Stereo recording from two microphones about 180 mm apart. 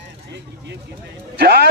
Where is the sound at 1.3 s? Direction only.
60° right (ahead or behind).